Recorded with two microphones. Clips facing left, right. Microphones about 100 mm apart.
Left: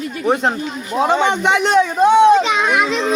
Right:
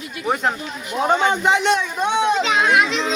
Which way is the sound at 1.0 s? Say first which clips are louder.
Left 3 dB; 90° left.